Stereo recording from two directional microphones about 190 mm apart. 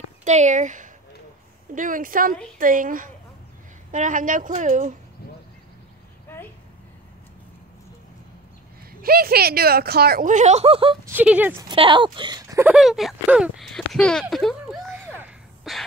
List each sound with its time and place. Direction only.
0.2 s a woman's voice: 40° right (ahead or behind)
6.2 s a sound: 10° left (ahead or behind)
9.0 s speech: 50° right (ahead or behind); by 11.0 s 30° right (ahead or behind)
11.1 s speech: 10° right (ahead or behind)
11.6 s speech: 25° right (ahead or behind)
12.7 s speech: centre (ahead or behind)
14.9 s sneeze: 10° right (ahead or behind)